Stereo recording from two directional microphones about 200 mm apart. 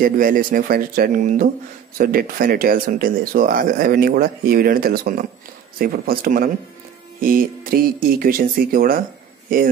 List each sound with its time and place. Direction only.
0.0 s speech: 45° right (ahead or behind)